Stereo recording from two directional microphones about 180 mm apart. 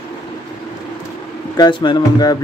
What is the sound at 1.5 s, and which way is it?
Speech, 25° left (ahead or behind).